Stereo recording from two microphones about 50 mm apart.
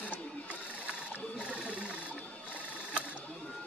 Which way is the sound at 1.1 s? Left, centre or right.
Right.